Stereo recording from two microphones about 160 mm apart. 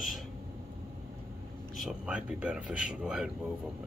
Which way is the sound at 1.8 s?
5° right (ahead or behind).